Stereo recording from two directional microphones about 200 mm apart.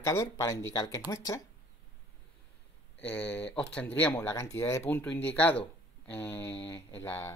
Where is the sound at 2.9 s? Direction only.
10° left (ahead or behind).